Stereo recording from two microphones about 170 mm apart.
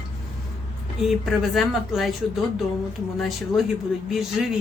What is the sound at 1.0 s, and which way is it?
A woman's voice, centre (ahead or behind).